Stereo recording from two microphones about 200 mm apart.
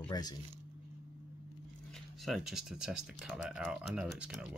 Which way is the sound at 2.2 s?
Centre (ahead or behind).